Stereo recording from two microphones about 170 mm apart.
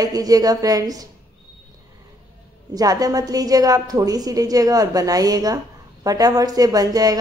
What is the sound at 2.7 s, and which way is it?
A woman's voice, 20° right (ahead or behind).